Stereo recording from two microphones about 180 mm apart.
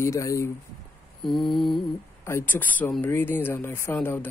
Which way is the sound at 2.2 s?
10° left (ahead or behind).